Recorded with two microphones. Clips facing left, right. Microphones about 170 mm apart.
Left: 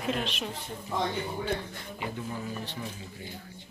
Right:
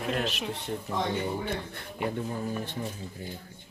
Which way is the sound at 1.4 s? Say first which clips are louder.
Left 1 dB; 60° right (ahead or behind).